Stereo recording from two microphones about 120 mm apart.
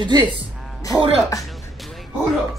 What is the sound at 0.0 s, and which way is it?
Speech, 40° right (ahead or behind).